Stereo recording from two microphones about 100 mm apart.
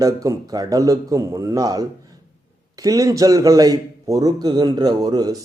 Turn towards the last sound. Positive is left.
turn(degrees=-40)  # may be behind; listen again after turning